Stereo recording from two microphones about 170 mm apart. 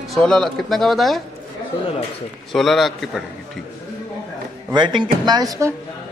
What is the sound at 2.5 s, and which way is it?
Speech, centre (ahead or behind).